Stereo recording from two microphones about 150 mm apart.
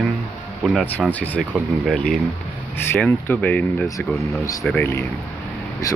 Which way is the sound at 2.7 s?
10° left (ahead or behind).